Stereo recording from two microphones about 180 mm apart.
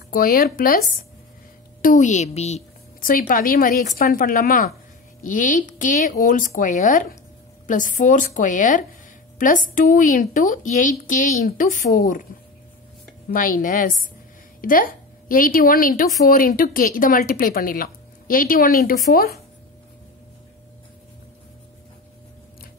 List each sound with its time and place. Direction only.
0.1 s a woman's voice: 55° left (ahead or behind)
13.3 s a woman's voice: 50° left (ahead or behind)